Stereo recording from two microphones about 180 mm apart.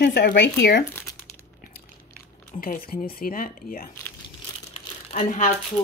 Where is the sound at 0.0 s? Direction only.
70° left (ahead or behind).